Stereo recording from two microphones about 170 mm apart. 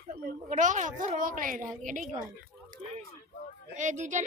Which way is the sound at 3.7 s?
45° right (ahead or behind).